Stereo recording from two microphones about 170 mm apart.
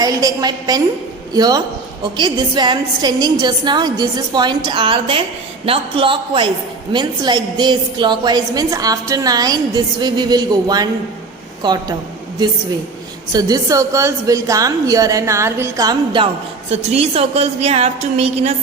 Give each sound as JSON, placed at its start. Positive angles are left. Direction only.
{"t": 0.0, "sound": "a woman's voice", "side_deg": -20}
{"t": 13.3, "sound": "a woman's voice", "side_deg": -20}